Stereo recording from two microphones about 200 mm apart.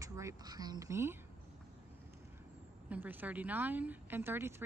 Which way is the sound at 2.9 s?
10° right (ahead or behind).